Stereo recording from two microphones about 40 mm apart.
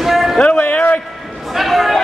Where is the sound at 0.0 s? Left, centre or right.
Centre.